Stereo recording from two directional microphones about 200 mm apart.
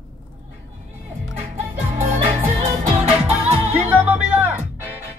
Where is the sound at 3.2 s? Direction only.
5° right (ahead or behind).